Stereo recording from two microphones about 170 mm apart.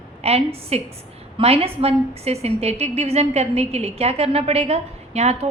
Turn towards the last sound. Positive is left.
turn(degrees=-40)  # may be behind; listen again after turning